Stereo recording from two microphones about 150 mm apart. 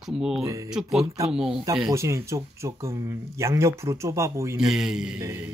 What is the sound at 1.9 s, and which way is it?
Speech, 20° right (ahead or behind).